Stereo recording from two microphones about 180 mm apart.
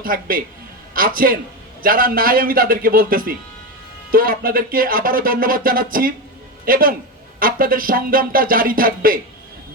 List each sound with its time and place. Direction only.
0.0 s speech: 50° right (ahead or behind)